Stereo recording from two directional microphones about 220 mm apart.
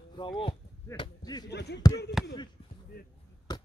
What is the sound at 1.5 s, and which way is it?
Speech, 50° left (ahead or behind).